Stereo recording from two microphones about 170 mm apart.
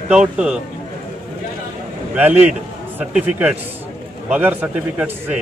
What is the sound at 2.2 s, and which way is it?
A man's voice, 10° right (ahead or behind).